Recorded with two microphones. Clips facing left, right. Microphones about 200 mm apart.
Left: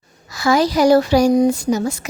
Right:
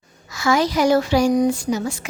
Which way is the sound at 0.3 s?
35° left (ahead or behind).